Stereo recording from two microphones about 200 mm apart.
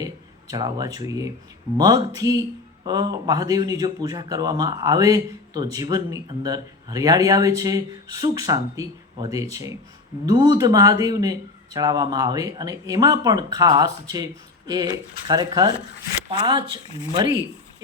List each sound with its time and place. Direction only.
0.0 s a man's voice: 20° right (ahead or behind)